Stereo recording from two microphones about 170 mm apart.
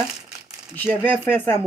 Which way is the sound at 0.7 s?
10° left (ahead or behind).